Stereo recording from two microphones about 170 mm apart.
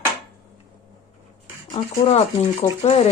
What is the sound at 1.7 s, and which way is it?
Speech, 35° left (ahead or behind).